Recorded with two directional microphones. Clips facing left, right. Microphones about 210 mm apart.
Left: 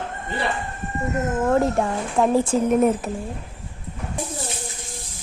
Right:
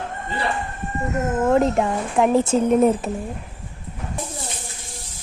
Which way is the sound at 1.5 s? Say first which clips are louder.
Right 2 dB; 20° right (ahead or behind).